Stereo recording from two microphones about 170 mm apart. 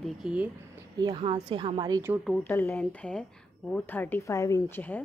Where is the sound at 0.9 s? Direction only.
25° right (ahead or behind).